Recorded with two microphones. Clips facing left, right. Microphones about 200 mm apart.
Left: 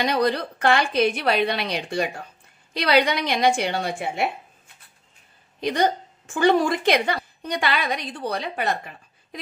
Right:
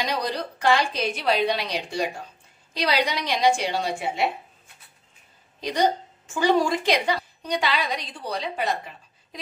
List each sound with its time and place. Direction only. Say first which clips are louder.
0.0 s a woman's voice: left 5 dB; 60° left (ahead or behind)
5.6 s a woman's voice: left 1 dB; 55° left (ahead or behind)